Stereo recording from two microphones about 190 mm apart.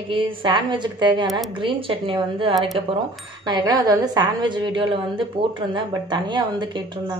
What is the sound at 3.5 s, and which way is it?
A woman's voice, 20° right (ahead or behind).